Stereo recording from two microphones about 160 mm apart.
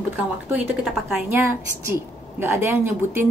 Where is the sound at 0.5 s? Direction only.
Centre (ahead or behind).